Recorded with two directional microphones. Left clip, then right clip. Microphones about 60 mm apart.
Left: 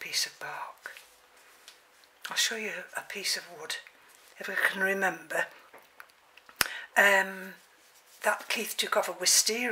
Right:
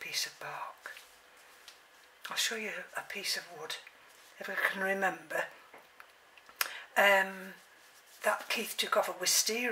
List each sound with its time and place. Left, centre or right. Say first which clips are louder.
0.0 s whispering: left 4 dB; left
2.2 s speech: left 4 dB; left
6.6 s a sound: left 4 dB; left
8.5 s speech: left 2 dB; left